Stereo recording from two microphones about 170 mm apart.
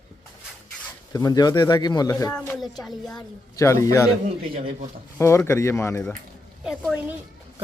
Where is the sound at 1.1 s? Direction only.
20° left (ahead or behind).